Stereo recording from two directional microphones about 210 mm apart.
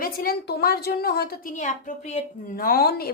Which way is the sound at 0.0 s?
45° left (ahead or behind).